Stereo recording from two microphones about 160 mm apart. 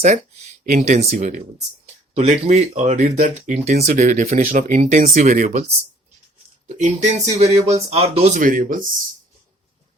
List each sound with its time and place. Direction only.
0.0 s a sound: 50° right (ahead or behind)
0.7 s speech: 50° right (ahead or behind)
6.7 s speech: 50° right (ahead or behind)
8.4 s speech: 60° right (ahead or behind)